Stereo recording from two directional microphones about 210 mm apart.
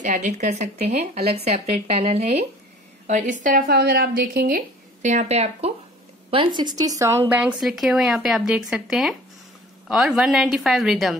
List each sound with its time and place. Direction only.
0.0 s a woman's voice: 35° right (ahead or behind); by 11.1 s centre (ahead or behind)